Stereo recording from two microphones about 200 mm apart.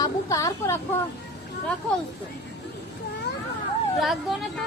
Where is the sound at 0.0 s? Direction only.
15° left (ahead or behind).